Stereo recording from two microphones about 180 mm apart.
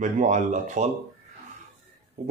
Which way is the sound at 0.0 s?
45° right (ahead or behind).